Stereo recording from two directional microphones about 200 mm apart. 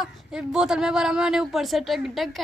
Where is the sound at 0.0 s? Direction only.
5° right (ahead or behind).